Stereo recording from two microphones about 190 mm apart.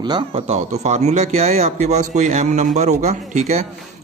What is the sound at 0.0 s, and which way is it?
A man's voice, 25° right (ahead or behind).